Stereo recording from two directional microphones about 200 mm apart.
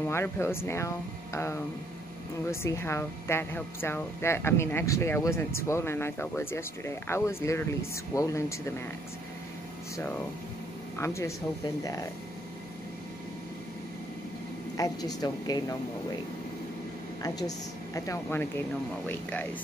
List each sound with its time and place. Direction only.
0.1 s speech: 10° left (ahead or behind)
9.9 s speech: 10° left (ahead or behind)
14.8 s speech: 20° left (ahead or behind)
17.2 s a woman's voice: 20° left (ahead or behind)